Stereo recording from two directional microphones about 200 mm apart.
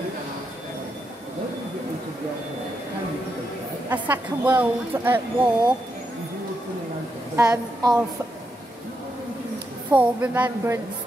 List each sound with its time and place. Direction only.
3.9 s speech: 10° right (ahead or behind)
7.3 s a woman's voice: 15° right (ahead or behind)
9.8 s speech: 5° right (ahead or behind)